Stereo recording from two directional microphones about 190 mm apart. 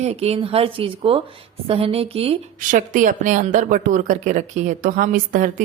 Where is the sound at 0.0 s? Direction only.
30° right (ahead or behind).